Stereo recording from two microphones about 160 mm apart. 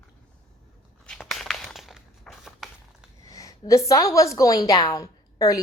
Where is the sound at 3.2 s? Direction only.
20° left (ahead or behind).